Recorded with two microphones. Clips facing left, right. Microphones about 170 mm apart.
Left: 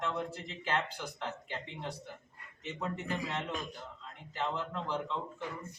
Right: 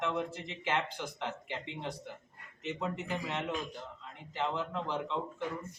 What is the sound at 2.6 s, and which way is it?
A man's voice, 10° right (ahead or behind).